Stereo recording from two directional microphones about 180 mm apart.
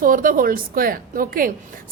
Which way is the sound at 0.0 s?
50° right (ahead or behind).